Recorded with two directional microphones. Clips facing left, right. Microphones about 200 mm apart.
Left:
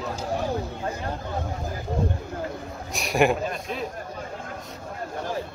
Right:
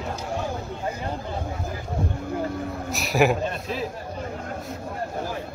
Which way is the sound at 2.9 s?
Centre (ahead or behind).